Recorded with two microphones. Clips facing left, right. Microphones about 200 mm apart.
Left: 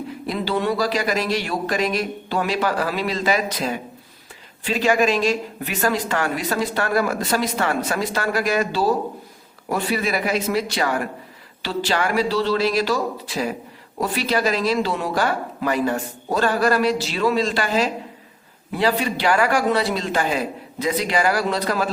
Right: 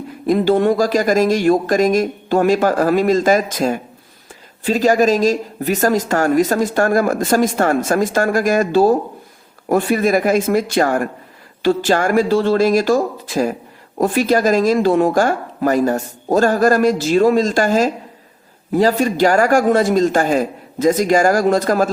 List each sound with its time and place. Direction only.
0.3 s speech: 50° right (ahead or behind)